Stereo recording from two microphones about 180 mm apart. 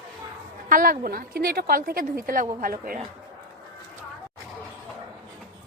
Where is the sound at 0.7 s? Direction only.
50° right (ahead or behind).